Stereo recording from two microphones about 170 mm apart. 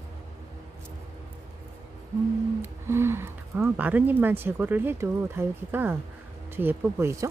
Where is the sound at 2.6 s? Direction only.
15° right (ahead or behind).